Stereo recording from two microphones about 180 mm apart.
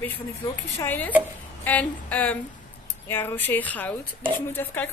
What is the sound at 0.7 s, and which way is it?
A woman's voice, 10° left (ahead or behind).